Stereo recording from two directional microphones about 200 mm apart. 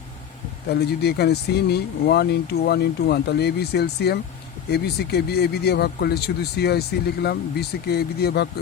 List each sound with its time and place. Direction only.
0.7 s speech: 55° left (ahead or behind)